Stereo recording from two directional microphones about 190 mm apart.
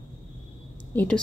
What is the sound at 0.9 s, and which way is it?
Speech, 5° left (ahead or behind).